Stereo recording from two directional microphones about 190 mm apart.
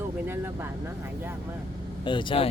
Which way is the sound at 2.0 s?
25° left (ahead or behind).